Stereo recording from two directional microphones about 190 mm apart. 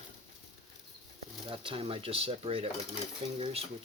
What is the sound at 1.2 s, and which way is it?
Speech, 30° right (ahead or behind).